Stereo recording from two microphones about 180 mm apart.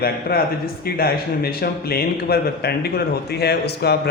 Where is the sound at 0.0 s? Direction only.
60° left (ahead or behind).